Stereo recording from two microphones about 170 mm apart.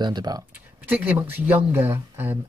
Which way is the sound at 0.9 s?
10° right (ahead or behind).